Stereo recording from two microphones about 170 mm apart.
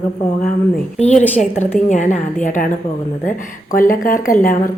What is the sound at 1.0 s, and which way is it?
Speech, 40° left (ahead or behind).